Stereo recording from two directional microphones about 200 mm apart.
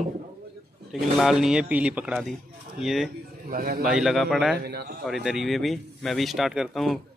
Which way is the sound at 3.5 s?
45° right (ahead or behind).